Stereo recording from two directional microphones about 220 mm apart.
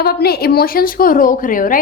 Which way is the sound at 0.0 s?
45° left (ahead or behind).